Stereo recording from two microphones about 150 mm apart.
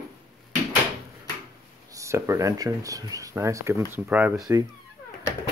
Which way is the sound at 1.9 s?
20° right (ahead or behind).